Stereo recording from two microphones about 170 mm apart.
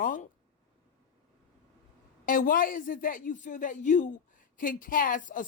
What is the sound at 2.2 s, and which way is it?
A man's voice, 55° left (ahead or behind).